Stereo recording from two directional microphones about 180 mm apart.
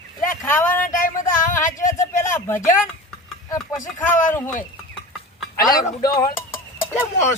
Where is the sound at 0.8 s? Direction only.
50° left (ahead or behind).